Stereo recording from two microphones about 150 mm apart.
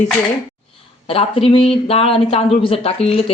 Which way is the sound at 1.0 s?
40° left (ahead or behind).